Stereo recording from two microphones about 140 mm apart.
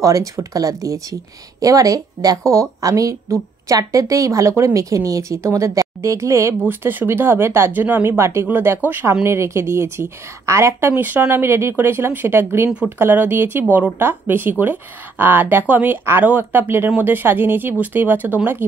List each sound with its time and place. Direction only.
0.0 s a woman's voice: 25° right (ahead or behind)